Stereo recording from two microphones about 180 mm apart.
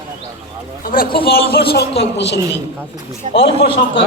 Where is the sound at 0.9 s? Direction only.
50° left (ahead or behind); by 2.4 s 70° left (ahead or behind).